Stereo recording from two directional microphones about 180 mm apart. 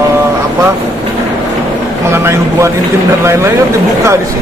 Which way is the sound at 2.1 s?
15° right (ahead or behind).